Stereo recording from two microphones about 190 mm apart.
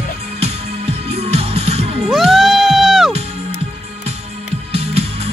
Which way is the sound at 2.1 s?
Centre (ahead or behind).